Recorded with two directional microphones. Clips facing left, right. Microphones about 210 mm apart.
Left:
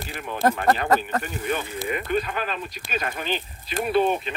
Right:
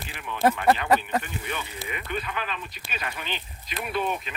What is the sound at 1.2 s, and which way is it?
Speech, 40° left (ahead or behind).